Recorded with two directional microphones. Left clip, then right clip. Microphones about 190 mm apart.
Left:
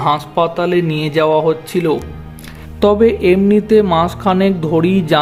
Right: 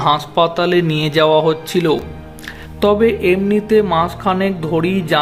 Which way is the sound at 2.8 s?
20° left (ahead or behind).